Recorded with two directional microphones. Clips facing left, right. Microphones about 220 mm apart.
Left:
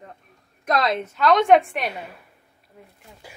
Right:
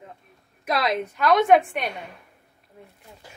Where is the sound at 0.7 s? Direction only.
10° right (ahead or behind); by 2.2 s 5° left (ahead or behind).